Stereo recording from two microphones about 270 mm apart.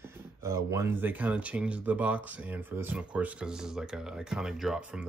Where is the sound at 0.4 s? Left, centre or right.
Centre.